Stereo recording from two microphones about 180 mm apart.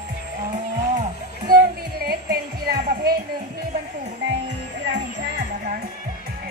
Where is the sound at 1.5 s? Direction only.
55° right (ahead or behind).